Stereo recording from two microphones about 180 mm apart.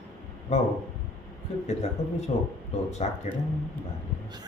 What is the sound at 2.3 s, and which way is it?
Speech, 40° left (ahead or behind).